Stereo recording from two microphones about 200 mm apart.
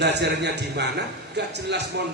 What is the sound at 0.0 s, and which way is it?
A man's voice, 60° right (ahead or behind).